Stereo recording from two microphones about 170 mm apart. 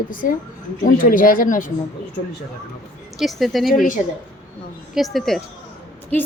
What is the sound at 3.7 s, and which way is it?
Speech, 50° left (ahead or behind).